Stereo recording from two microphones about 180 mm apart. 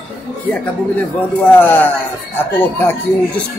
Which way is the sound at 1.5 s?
10° left (ahead or behind).